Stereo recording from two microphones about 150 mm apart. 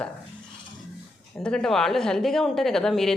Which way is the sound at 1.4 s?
5° left (ahead or behind).